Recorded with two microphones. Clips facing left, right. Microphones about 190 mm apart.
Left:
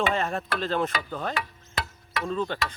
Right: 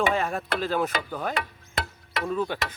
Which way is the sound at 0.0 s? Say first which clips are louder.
Right 1 dB; 5° right (ahead or behind).